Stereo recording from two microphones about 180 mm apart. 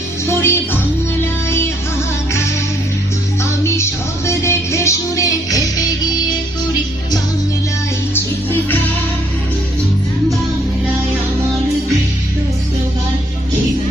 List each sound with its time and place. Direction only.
0.3 s music: 15° left (ahead or behind)
4.3 s music: 15° left (ahead or behind)